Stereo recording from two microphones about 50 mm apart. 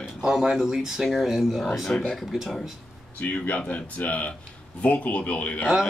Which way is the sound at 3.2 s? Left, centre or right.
Left.